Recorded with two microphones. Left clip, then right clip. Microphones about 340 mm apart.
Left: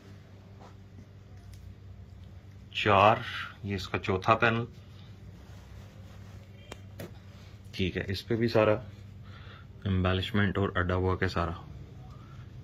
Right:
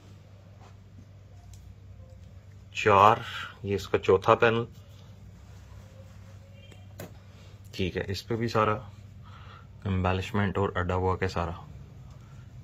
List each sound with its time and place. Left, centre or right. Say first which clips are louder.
2.7 s speech: right 3 dB; centre
7.7 s speech: right 1 dB; right